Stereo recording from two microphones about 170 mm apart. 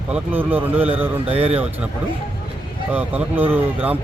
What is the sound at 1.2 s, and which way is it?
Speech, 35° right (ahead or behind).